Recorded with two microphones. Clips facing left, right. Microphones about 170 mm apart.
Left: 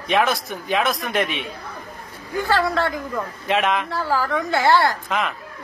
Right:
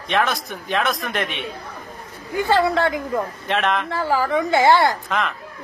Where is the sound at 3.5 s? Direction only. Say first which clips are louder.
Left 1 dB; 5° left (ahead or behind).